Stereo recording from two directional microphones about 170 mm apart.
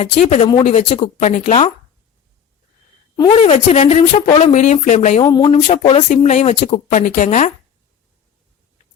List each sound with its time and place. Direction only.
0.3 s a woman's voice: 40° left (ahead or behind)
3.2 s a woman's voice: 30° left (ahead or behind)
5.2 s a woman's voice: 25° left (ahead or behind); by 7.5 s 45° left (ahead or behind)